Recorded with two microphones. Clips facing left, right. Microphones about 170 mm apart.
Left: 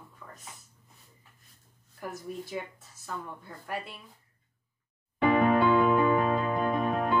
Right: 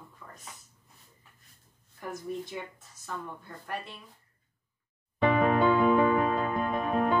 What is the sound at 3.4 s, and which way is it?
Speech, 5° left (ahead or behind).